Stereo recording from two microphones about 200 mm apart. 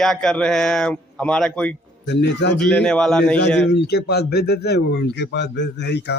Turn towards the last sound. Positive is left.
turn(degrees=60)  # may be behind; listen again after turning